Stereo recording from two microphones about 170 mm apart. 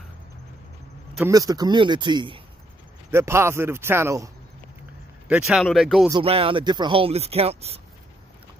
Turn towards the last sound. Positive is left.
turn(degrees=-35)  # may be behind; listen again after turning